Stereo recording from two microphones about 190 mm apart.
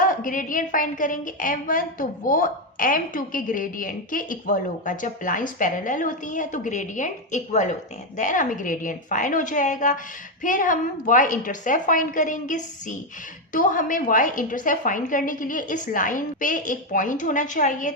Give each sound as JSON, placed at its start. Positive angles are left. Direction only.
{"t": 0.0, "sound": "a woman's voice", "side_deg": 45}